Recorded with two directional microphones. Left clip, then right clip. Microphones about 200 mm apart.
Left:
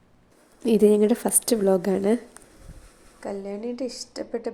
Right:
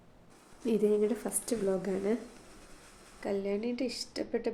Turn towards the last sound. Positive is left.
turn(degrees=-10)  # may be behind; listen again after turning